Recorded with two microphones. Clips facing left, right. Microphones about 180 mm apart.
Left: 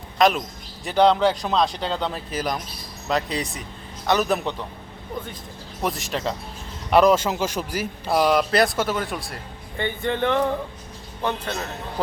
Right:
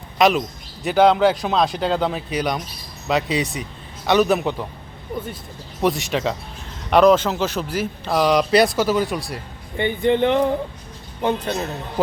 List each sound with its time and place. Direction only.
0.2 s a man's voice: centre (ahead or behind)
5.8 s speech: centre (ahead or behind)
9.7 s speech: 15° right (ahead or behind)